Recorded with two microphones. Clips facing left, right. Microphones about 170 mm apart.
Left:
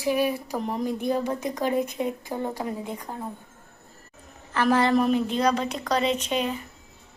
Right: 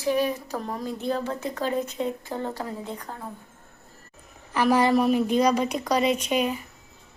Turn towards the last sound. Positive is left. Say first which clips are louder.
# right 2 dB
turn(degrees=-10)  # may be behind; listen again after turning